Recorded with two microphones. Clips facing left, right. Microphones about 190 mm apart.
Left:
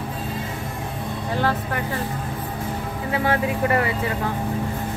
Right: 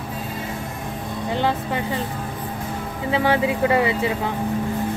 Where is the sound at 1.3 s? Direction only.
20° right (ahead or behind).